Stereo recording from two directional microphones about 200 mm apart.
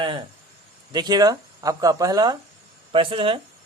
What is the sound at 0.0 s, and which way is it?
Speech, 25° right (ahead or behind).